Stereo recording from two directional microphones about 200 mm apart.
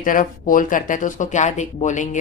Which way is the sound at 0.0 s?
45° left (ahead or behind).